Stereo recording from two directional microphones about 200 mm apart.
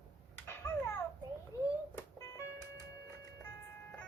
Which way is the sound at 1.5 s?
15° left (ahead or behind).